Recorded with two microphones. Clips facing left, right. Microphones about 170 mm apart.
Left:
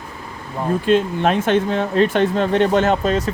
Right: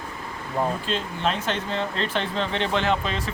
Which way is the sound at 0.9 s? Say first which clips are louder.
Left 10 dB; 55° left (ahead or behind).